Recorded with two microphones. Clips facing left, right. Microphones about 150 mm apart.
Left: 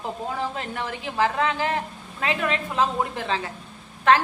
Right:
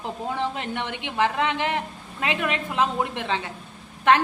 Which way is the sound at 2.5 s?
35° left (ahead or behind).